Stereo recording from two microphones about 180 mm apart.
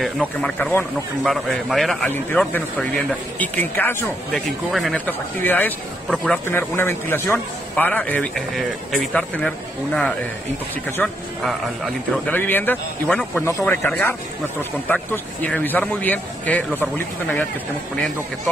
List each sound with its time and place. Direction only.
0.0 s speech: 5° left (ahead or behind)
4.5 s a man's voice: centre (ahead or behind)
11.0 s speech: 10° left (ahead or behind)
12.3 s speech: 10° left (ahead or behind)